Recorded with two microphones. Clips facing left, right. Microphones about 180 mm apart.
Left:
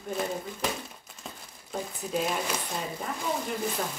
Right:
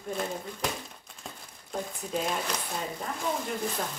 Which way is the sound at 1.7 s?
5° left (ahead or behind).